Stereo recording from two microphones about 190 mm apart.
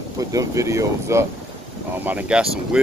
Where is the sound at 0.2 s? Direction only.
20° right (ahead or behind).